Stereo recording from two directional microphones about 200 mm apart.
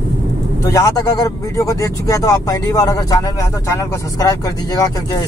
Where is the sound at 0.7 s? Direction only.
15° left (ahead or behind).